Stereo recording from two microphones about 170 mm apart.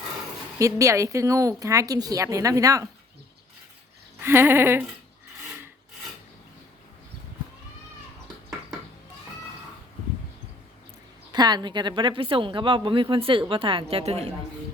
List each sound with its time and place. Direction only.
0.6 s speech: 20° right (ahead or behind)
4.2 s a sound: 15° right (ahead or behind)
11.3 s a woman's voice: 25° right (ahead or behind)